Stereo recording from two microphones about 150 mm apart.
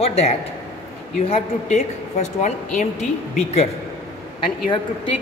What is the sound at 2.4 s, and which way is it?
Speech, 55° left (ahead or behind).